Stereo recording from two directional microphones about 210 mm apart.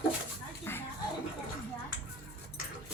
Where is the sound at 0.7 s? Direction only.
10° left (ahead or behind).